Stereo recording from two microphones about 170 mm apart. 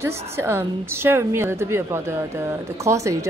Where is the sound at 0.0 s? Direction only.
15° right (ahead or behind).